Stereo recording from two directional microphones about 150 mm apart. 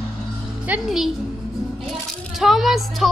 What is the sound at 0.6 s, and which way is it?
Speech, 5° right (ahead or behind).